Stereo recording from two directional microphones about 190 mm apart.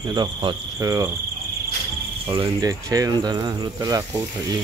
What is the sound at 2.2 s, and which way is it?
Speech, 20° right (ahead or behind).